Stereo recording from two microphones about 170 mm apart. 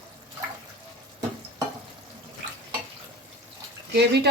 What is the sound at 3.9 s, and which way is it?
Speech, 75° right (ahead or behind).